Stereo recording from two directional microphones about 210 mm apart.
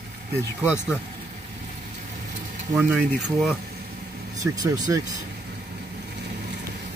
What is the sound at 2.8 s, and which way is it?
Speech, 10° right (ahead or behind).